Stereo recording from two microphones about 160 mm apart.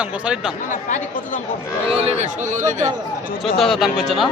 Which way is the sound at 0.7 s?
50° left (ahead or behind).